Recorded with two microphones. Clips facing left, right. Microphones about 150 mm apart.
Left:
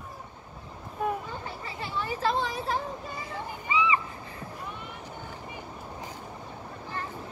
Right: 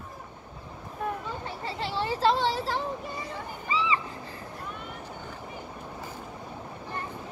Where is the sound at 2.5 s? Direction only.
90° right.